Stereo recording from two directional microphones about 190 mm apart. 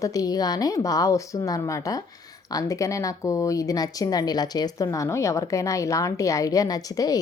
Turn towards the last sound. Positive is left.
turn(degrees=20)  # may be behind; listen again after turning